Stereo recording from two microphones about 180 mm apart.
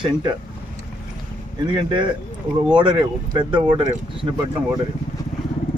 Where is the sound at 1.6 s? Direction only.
25° right (ahead or behind).